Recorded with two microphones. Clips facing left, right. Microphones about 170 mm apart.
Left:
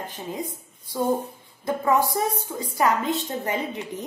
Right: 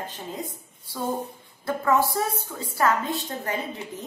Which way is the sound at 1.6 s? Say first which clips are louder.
Left 1 dB; 15° left (ahead or behind).